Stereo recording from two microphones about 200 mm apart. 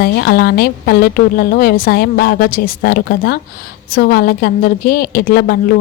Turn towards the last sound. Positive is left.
turn(degrees=50)  # may be behind; listen again after turning